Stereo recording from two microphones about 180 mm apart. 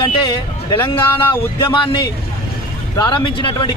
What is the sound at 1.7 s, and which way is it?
A man's voice, 30° left (ahead or behind).